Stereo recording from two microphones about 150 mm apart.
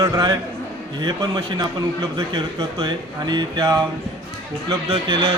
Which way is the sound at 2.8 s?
30° right (ahead or behind).